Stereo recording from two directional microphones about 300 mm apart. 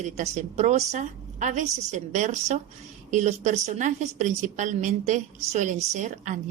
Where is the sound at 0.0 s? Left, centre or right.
Right.